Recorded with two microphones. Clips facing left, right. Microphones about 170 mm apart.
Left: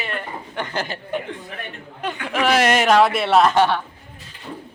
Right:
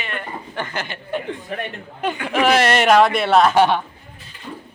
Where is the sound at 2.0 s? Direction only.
5° right (ahead or behind).